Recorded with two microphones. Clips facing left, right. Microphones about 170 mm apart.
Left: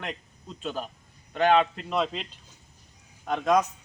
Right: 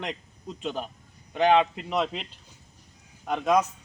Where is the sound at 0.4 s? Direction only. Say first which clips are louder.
Right 1 dB; 20° right (ahead or behind).